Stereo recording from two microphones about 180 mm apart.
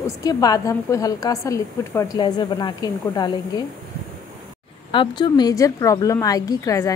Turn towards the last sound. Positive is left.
turn(degrees=20)  # may be behind; listen again after turning